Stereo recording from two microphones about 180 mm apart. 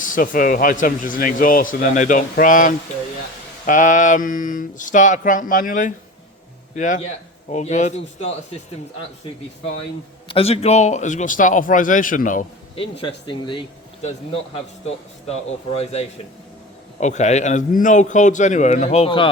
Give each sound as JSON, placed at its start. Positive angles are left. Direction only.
{"t": 0.0, "sound": "a man's voice", "side_deg": 50}
{"t": 10.2, "sound": "speech", "side_deg": 30}
{"t": 12.7, "sound": "speech", "side_deg": 30}
{"t": 15.8, "sound": "a man's voice", "side_deg": 35}